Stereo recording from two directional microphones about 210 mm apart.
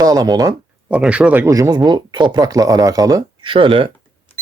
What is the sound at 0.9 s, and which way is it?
Speech, 5° right (ahead or behind).